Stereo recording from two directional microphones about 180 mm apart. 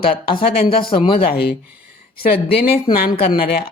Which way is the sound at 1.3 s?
60° left (ahead or behind).